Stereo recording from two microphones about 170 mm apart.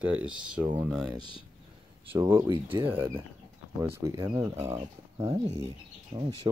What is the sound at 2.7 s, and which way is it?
Speech, 10° right (ahead or behind).